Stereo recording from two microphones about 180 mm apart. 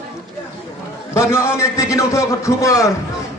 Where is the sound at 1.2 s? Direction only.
15° left (ahead or behind).